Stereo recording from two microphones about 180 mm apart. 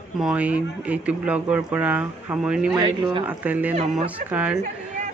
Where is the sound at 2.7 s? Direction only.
30° right (ahead or behind).